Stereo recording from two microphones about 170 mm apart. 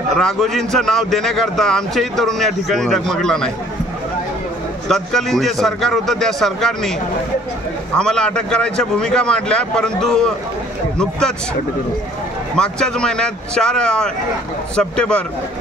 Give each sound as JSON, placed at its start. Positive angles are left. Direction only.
{"t": 0.1, "sound": "a man's voice", "side_deg": 0}
{"t": 4.8, "sound": "a man's voice", "side_deg": 0}
{"t": 8.0, "sound": "a man's voice", "side_deg": 5}
{"t": 12.5, "sound": "a man's voice", "side_deg": 5}